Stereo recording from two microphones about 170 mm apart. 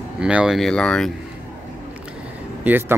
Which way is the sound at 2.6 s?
10° right (ahead or behind).